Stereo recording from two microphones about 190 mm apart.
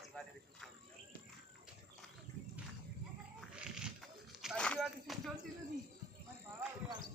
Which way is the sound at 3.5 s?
5° right (ahead or behind).